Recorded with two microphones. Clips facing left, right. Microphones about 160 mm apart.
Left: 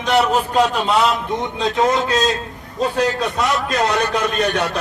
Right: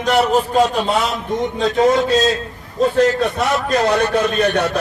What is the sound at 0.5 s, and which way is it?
Speech, 50° right (ahead or behind).